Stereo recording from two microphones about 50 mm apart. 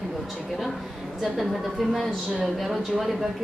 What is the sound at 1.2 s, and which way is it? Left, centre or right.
A woman's voice, centre.